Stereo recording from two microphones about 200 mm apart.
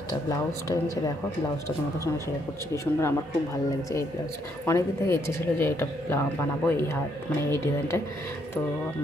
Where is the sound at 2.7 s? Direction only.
15° left (ahead or behind).